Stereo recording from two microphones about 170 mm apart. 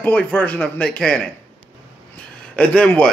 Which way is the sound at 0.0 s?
10° left (ahead or behind).